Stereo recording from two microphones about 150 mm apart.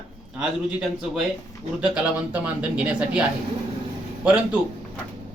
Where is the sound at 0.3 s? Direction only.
5° right (ahead or behind).